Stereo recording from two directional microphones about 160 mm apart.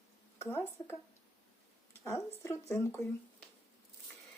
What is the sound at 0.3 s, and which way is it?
Speech, 15° left (ahead or behind).